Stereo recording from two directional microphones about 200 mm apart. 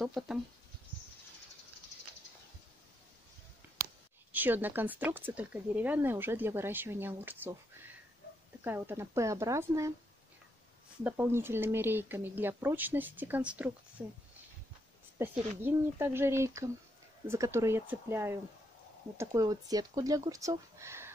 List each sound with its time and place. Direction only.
0.0 s speech: centre (ahead or behind)
3.6 s a sound: 10° right (ahead or behind)
4.3 s speech: 10° right (ahead or behind)
11.1 s speech: 10° right (ahead or behind)